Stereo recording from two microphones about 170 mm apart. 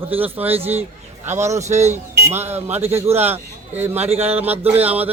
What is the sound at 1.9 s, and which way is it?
A man's voice, 15° right (ahead or behind).